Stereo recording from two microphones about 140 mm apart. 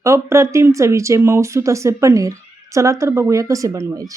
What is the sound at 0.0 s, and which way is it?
A woman's voice, 20° right (ahead or behind).